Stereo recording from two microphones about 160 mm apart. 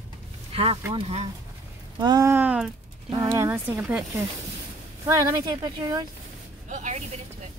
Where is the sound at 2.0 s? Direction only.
25° right (ahead or behind).